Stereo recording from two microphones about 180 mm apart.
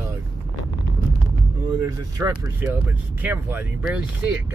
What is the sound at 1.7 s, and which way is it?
Speech, 20° right (ahead or behind).